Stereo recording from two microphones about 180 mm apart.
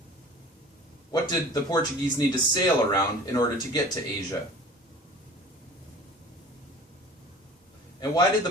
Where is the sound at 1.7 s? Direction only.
20° left (ahead or behind).